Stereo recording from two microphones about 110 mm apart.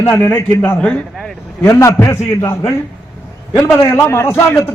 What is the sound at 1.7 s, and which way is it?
A man's voice, 25° left (ahead or behind).